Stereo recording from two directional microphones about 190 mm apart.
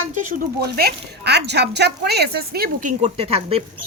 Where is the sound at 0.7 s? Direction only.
60° right (ahead or behind); by 3.6 s 30° right (ahead or behind).